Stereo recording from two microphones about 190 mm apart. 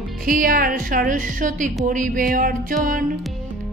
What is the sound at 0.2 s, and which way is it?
Music, 50° right (ahead or behind).